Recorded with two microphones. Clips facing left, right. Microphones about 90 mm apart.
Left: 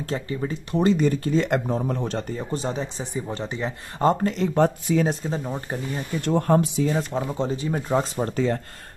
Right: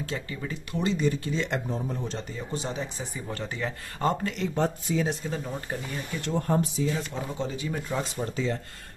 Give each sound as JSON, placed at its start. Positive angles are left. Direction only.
{"t": 0.0, "sound": "speech", "side_deg": 35}
{"t": 0.8, "sound": "speech", "side_deg": 50}
{"t": 1.7, "sound": "speech", "side_deg": 70}
{"t": 4.0, "sound": "speech", "side_deg": 35}
{"t": 4.6, "sound": "speech", "side_deg": 60}
{"t": 5.0, "sound": "speech", "side_deg": 35}
{"t": 6.1, "sound": "speech", "side_deg": 50}
{"t": 6.4, "sound": "speech", "side_deg": 70}
{"t": 6.9, "sound": "speech", "side_deg": 45}